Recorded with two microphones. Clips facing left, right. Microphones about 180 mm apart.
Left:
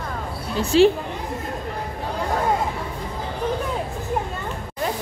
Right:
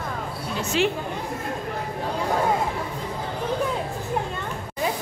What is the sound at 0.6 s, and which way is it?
Speech, 30° left (ahead or behind).